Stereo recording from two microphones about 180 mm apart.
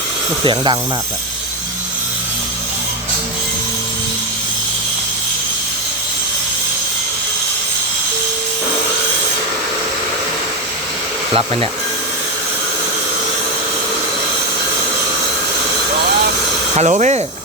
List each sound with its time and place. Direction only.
0.4 s speech: 25° right (ahead or behind)
16.7 s speech: 40° right (ahead or behind)